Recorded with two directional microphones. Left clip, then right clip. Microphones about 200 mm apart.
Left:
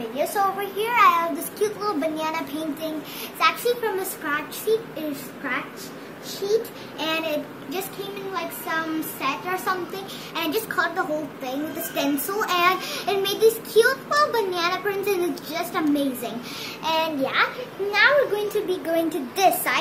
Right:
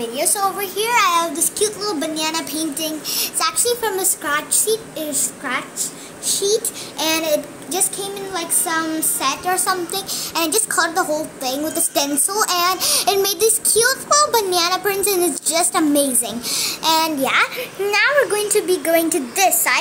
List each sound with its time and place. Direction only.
0.7 s a child's voice: 25° right (ahead or behind)
6.2 s a child's voice: 40° right (ahead or behind); by 19.8 s 25° right (ahead or behind)